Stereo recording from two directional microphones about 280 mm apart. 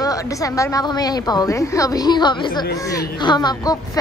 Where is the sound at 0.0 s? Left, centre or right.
Centre.